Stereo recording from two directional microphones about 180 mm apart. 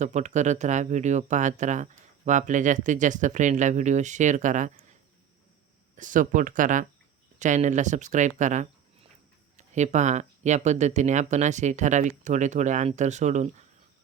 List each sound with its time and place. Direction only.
0.0 s speech: 40° right (ahead or behind)
6.0 s speech: 45° right (ahead or behind)